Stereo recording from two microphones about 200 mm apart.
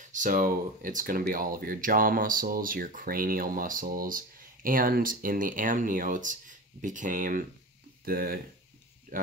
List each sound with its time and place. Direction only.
0.1 s speech: 40° right (ahead or behind)